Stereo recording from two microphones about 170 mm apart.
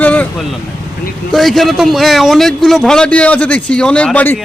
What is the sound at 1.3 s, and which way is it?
A man's voice, centre (ahead or behind).